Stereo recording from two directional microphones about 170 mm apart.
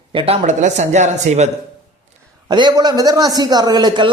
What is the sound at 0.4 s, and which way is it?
Speech, 45° right (ahead or behind).